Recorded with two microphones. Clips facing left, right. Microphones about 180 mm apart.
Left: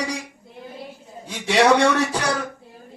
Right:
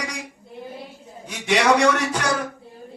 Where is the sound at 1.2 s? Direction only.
30° left (ahead or behind).